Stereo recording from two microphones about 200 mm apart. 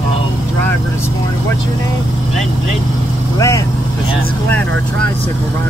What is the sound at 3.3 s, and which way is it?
Speech, 15° left (ahead or behind).